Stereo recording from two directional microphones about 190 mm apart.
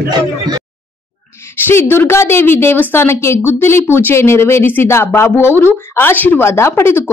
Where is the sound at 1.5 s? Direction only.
10° left (ahead or behind).